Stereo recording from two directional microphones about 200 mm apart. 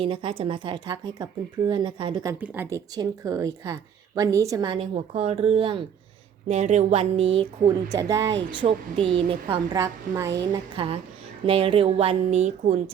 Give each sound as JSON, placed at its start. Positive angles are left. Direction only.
{"t": 0.0, "sound": "speech", "side_deg": -25}
{"t": 2.4, "sound": "speech", "side_deg": -10}